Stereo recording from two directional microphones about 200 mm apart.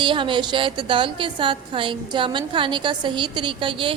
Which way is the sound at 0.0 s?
25° right (ahead or behind).